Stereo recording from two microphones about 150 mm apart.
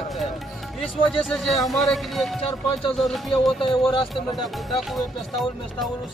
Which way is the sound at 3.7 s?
35° left (ahead or behind).